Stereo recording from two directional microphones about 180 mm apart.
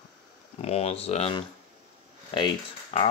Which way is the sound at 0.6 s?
35° left (ahead or behind).